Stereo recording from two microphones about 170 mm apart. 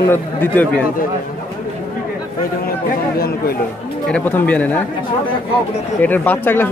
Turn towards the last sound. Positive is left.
turn(degrees=10)  # may be behind; listen again after turning